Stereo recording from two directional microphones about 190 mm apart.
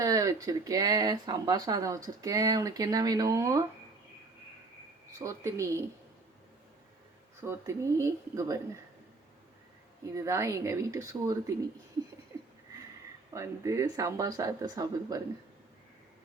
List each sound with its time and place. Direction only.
0.0 s speech: 20° right (ahead or behind)
5.2 s speech: 15° right (ahead or behind)
7.4 s speech: 15° right (ahead or behind)
10.2 s speech: 15° right (ahead or behind)
13.3 s speech: 15° right (ahead or behind)